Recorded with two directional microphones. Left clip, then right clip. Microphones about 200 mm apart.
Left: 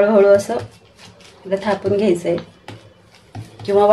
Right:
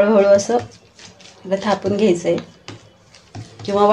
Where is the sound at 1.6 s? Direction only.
20° right (ahead or behind).